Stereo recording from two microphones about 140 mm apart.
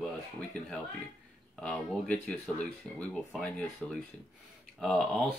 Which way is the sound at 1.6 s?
5° left (ahead or behind).